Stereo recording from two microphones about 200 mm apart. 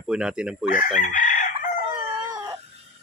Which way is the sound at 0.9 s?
40° left (ahead or behind).